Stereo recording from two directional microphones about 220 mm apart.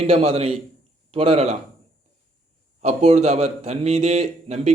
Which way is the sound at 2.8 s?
30° right (ahead or behind).